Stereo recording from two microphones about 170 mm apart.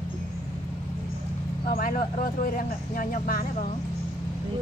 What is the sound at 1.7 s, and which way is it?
Speech, 55° left (ahead or behind).